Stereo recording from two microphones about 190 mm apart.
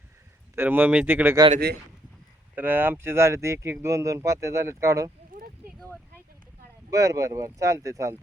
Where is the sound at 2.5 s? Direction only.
10° right (ahead or behind).